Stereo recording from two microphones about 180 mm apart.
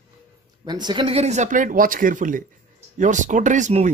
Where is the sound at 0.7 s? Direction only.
25° right (ahead or behind).